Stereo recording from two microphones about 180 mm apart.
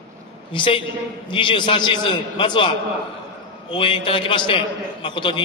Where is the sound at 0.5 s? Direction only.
30° left (ahead or behind).